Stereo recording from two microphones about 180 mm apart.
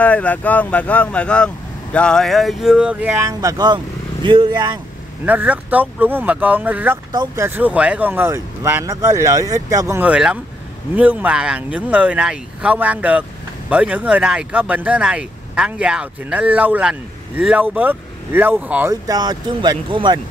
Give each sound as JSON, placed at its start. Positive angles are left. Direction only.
{"t": 0.0, "sound": "speech", "side_deg": 10}
{"t": 5.2, "sound": "speech", "side_deg": -10}
{"t": 19.0, "sound": "speech", "side_deg": -25}